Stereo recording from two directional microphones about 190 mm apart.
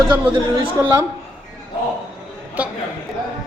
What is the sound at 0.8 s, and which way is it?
Speech, 15° right (ahead or behind).